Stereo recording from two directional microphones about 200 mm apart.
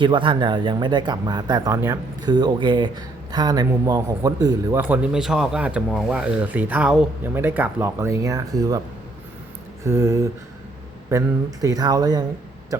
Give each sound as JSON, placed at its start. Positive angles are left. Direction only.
{"t": 0.0, "sound": "speech", "side_deg": -25}
{"t": 9.8, "sound": "speech", "side_deg": -15}